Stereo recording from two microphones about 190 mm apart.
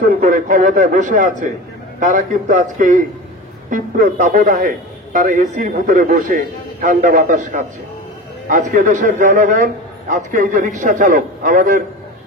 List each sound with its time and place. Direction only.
0.0 s a man's voice: 45° right (ahead or behind)